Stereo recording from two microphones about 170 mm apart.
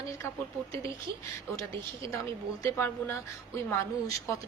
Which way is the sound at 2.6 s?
15° left (ahead or behind).